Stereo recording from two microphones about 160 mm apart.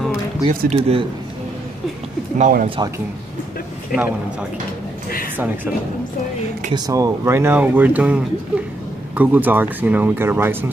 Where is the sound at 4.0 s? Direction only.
10° right (ahead or behind).